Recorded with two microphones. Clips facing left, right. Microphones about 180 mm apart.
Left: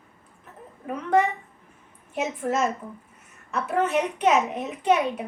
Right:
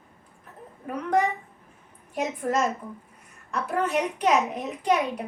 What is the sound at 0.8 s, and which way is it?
A woman's voice, centre (ahead or behind).